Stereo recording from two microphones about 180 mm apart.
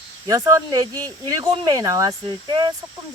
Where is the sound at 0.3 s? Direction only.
20° right (ahead or behind).